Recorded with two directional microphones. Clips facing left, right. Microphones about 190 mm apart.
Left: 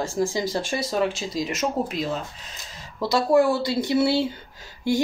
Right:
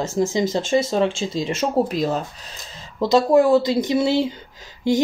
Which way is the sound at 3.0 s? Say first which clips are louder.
Right 4 dB; 20° right (ahead or behind).